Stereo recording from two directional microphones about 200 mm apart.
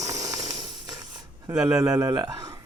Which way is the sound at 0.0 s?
15° right (ahead or behind).